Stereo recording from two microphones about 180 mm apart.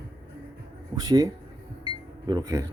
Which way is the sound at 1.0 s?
20° right (ahead or behind).